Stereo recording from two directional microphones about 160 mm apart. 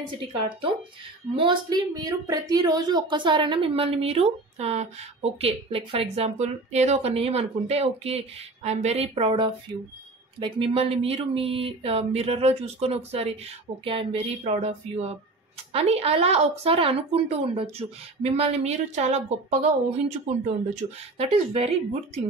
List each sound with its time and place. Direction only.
1.3 s a woman's voice: 30° right (ahead or behind)